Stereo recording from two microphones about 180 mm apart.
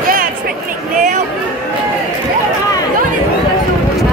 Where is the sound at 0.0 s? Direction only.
50° right (ahead or behind).